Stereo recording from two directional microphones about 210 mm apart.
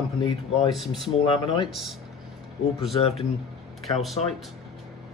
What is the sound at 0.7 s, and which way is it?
Speech, centre (ahead or behind).